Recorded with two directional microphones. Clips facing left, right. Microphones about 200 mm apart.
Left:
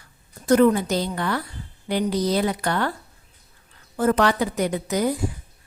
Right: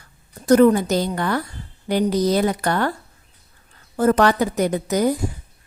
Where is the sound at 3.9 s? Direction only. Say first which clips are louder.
Right 3 dB; 40° right (ahead or behind).